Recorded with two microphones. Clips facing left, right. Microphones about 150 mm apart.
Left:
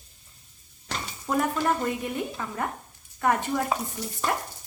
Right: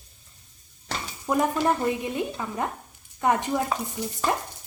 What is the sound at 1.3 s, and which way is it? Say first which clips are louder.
Speech: right 2 dB; 20° right (ahead or behind).